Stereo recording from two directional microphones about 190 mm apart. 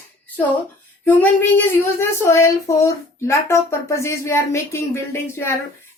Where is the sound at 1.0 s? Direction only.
10° left (ahead or behind).